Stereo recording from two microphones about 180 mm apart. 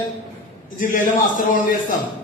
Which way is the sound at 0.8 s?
50° left (ahead or behind).